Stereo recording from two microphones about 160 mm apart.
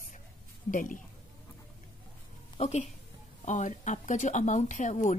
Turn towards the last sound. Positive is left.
turn(degrees=50)  # may be behind; listen again after turning